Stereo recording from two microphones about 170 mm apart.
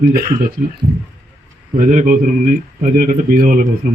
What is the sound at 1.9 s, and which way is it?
Speech, 50° right (ahead or behind).